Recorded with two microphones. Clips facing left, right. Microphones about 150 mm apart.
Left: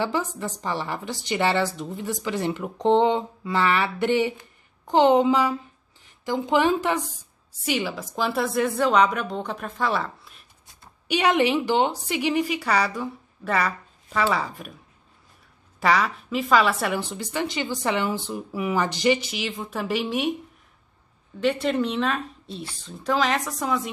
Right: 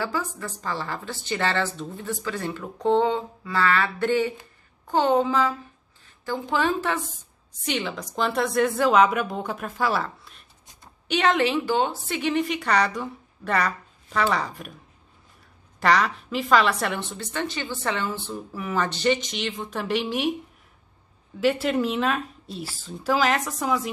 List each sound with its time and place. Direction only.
0.0 s a woman's voice: 20° left (ahead or behind); by 10.4 s centre (ahead or behind)
11.1 s a woman's voice: 10° left (ahead or behind)
15.8 s a woman's voice: centre (ahead or behind)
21.4 s a woman's voice: 5° right (ahead or behind)